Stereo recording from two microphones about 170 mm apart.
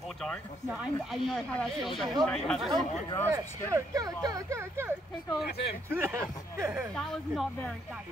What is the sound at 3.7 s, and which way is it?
Speech, 20° right (ahead or behind).